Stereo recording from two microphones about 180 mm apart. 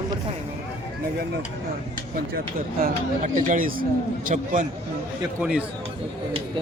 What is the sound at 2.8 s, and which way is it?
Speech, 40° right (ahead or behind).